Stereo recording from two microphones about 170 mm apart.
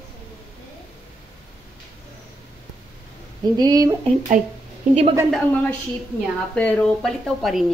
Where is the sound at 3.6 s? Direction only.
20° right (ahead or behind).